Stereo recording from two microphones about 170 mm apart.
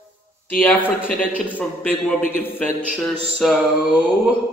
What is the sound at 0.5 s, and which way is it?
A man's voice, 10° left (ahead or behind).